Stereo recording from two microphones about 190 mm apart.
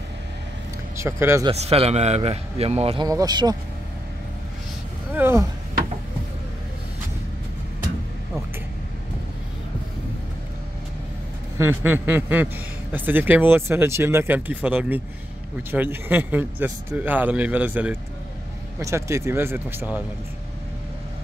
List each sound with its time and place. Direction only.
0.9 s speech: 15° right (ahead or behind)
1.5 s a man's voice: 30° right (ahead or behind)
3.1 s speech: 20° right (ahead or behind)
5.1 s speech: 10° right (ahead or behind)
11.5 s speech: 10° right (ahead or behind)